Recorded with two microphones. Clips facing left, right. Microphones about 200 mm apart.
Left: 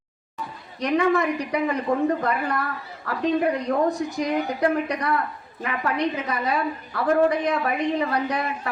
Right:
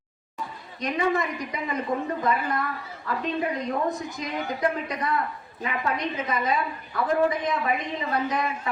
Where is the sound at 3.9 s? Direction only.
70° left (ahead or behind).